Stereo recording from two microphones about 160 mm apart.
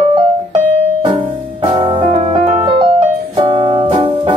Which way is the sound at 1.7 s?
35° right (ahead or behind).